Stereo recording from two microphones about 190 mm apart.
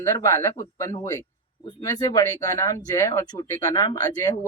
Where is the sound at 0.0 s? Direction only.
15° left (ahead or behind).